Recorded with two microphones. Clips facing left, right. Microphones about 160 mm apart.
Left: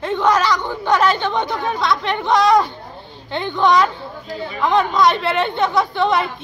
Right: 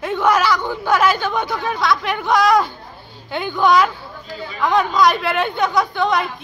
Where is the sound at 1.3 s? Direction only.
20° left (ahead or behind).